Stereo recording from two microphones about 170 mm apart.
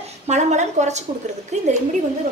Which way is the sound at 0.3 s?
45° right (ahead or behind).